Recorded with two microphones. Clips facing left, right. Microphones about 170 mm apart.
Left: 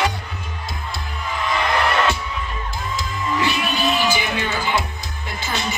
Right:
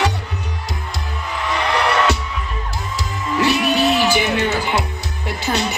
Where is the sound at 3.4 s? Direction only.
75° right (ahead or behind).